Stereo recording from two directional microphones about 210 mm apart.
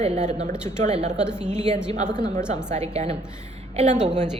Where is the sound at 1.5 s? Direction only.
30° right (ahead or behind).